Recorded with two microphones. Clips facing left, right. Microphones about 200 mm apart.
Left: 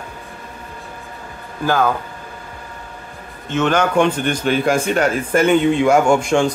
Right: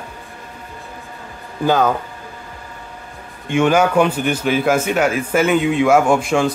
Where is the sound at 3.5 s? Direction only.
10° right (ahead or behind).